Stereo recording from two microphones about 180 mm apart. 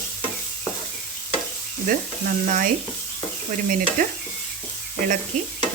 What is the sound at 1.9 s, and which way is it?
Speech, 50° right (ahead or behind).